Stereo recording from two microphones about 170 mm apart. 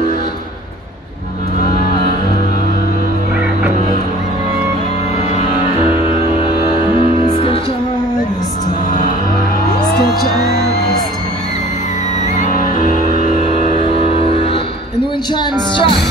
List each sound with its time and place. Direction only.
7.0 s music: 30° left (ahead or behind)
12.5 s music: 45° right (ahead or behind)
13.7 s music: 35° left (ahead or behind)